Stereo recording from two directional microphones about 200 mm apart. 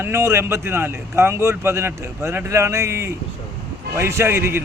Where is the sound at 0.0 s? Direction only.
15° right (ahead or behind).